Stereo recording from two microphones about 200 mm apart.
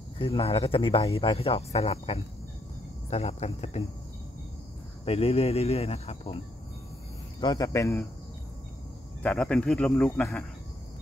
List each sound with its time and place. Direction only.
0.2 s speech: 25° left (ahead or behind)
5.0 s speech: 30° left (ahead or behind); by 8.1 s 15° left (ahead or behind)
9.2 s speech: 5° left (ahead or behind)